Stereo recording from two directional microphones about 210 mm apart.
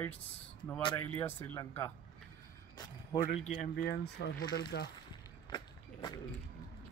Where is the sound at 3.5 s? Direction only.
45° left (ahead or behind).